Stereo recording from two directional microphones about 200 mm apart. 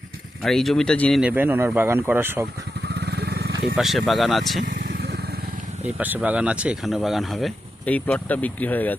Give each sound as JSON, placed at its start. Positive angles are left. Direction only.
{"t": 0.4, "sound": "speech", "side_deg": 0}
{"t": 1.2, "sound": "speech", "side_deg": -10}
{"t": 2.9, "sound": "vehicle", "side_deg": -55}
{"t": 3.8, "sound": "speech", "side_deg": 0}
{"t": 4.6, "sound": "vehicle", "side_deg": -45}
{"t": 5.8, "sound": "speech", "side_deg": -10}